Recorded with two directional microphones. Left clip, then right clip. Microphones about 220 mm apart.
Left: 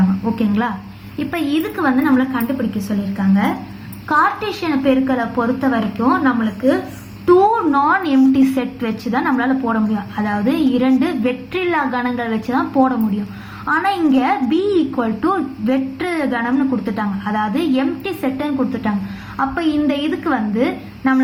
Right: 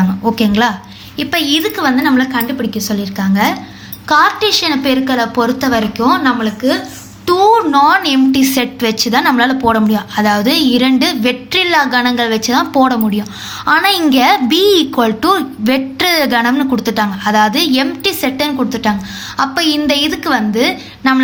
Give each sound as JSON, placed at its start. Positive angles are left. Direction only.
{"t": 0.3, "sound": "a woman's voice", "side_deg": -50}